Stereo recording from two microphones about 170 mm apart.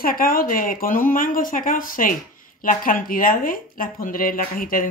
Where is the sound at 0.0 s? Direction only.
60° left (ahead or behind).